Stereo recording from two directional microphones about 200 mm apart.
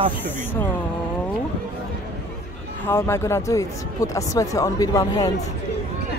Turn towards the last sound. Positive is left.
turn(degrees=20)  # may be behind; listen again after turning